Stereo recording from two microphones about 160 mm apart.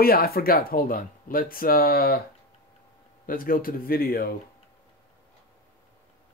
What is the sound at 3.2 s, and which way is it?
Speech, 60° left (ahead or behind).